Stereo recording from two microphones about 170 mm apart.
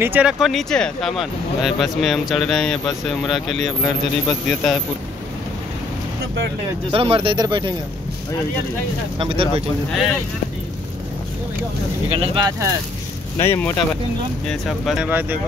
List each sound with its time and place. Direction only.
0.0 s speech: 10° right (ahead or behind)
6.9 s speech: 35° right (ahead or behind)
9.2 s speech: 30° right (ahead or behind)
12.1 s speech: 35° right (ahead or behind)
13.4 s speech: 15° left (ahead or behind)
14.5 s speech: centre (ahead or behind)
15.0 s speech: 10° right (ahead or behind)